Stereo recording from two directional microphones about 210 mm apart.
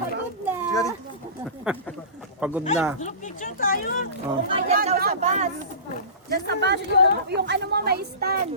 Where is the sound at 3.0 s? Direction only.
35° left (ahead or behind).